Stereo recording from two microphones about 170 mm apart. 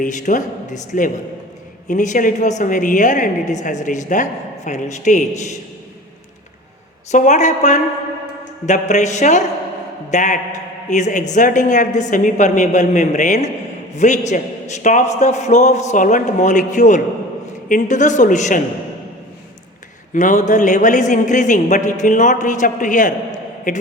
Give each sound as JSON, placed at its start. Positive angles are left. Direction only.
{"t": 0.0, "sound": "a woman's voice", "side_deg": 45}
{"t": 7.1, "sound": "a woman's voice", "side_deg": 45}
{"t": 20.1, "sound": "a woman's voice", "side_deg": 45}